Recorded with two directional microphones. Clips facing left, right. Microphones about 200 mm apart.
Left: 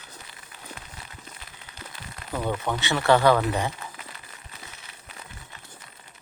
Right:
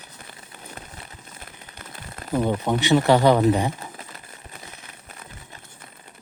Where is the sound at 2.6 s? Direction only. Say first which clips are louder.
Right 5 dB; 20° right (ahead or behind).